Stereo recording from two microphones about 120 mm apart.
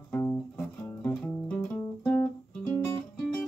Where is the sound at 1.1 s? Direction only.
5° left (ahead or behind).